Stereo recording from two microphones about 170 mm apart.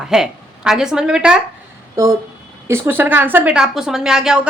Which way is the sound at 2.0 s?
15° right (ahead or behind).